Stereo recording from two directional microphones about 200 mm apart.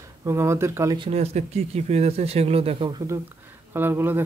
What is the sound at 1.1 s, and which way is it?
Speech, 35° right (ahead or behind).